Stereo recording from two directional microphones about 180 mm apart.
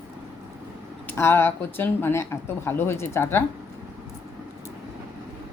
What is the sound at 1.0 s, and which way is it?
Speech, 15° left (ahead or behind).